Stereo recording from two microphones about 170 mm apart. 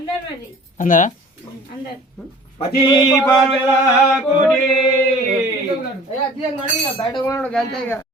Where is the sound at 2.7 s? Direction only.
25° left (ahead or behind).